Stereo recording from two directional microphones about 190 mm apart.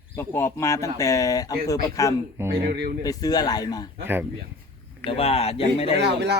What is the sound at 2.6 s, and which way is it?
Speech, 60° right (ahead or behind).